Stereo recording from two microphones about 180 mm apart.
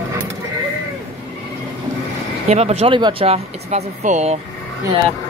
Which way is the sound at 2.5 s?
35° right (ahead or behind).